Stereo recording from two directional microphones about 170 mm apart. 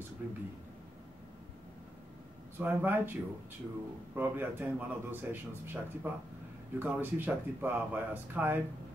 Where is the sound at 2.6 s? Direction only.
10° right (ahead or behind).